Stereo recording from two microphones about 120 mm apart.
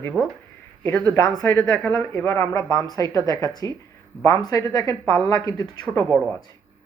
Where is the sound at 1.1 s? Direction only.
25° left (ahead or behind).